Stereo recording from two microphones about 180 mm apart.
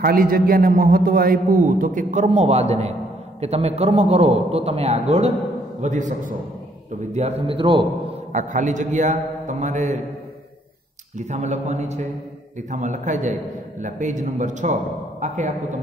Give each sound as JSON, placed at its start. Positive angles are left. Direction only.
{"t": 0.0, "sound": "a man's voice", "side_deg": -55}
{"t": 8.3, "sound": "a man's voice", "side_deg": -45}
{"t": 11.1, "sound": "a man's voice", "side_deg": -40}